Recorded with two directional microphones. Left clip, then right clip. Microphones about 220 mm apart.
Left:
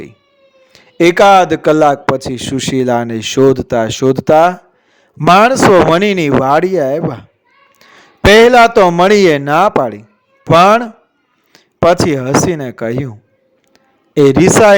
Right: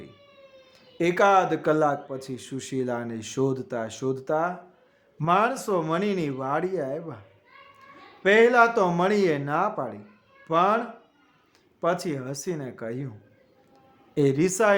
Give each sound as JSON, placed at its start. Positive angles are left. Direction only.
{"t": 0.7, "sound": "a man's voice", "side_deg": 40}
{"t": 8.3, "sound": "a man's voice", "side_deg": 45}